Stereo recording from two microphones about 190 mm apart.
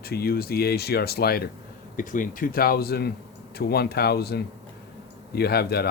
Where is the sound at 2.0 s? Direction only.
45° left (ahead or behind).